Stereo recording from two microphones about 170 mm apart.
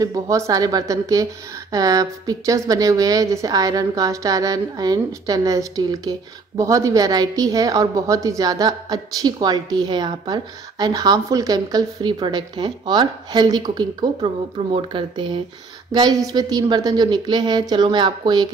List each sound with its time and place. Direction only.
0.0 s a woman's voice: 20° right (ahead or behind)